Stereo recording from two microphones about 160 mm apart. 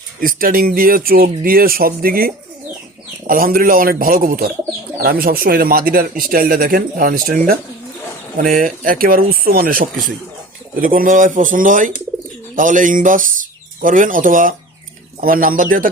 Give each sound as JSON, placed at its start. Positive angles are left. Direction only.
{"t": 0.2, "sound": "speech", "side_deg": -65}
{"t": 8.4, "sound": "speech", "side_deg": -55}